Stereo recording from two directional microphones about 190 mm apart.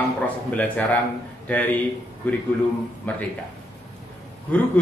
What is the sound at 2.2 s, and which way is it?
Speech, 10° left (ahead or behind).